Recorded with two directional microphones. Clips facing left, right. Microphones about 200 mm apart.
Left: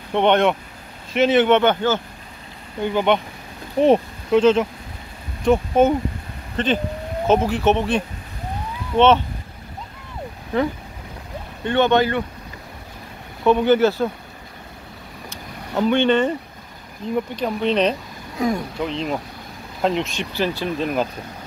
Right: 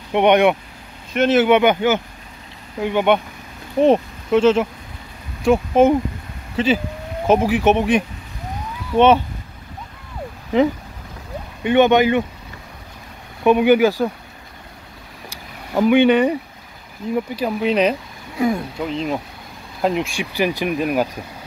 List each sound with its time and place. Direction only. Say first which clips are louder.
0.1 s speech: right 3 dB; 15° right (ahead or behind)
1.1 s speech: right 1 dB; centre (ahead or behind)
11.6 s speech: right 4 dB; 15° right (ahead or behind)
13.4 s speech: right 2 dB; 15° right (ahead or behind)
15.7 s speech: right 4 dB; 10° right (ahead or behind)